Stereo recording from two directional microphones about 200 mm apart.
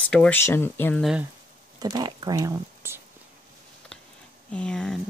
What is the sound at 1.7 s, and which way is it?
Speech, 20° right (ahead or behind).